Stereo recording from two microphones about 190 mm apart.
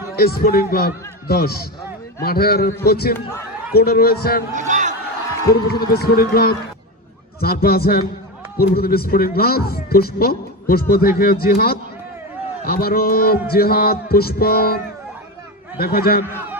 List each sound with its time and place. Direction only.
0.2 s a man's voice: 55° left (ahead or behind)
4.5 s a sound: 40° right (ahead or behind)
5.5 s a man's voice: 55° left (ahead or behind)
15.8 s a man's voice: 50° left (ahead or behind)